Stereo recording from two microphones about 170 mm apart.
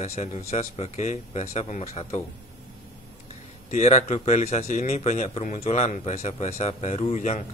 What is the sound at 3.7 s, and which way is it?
Speech, 40° left (ahead or behind).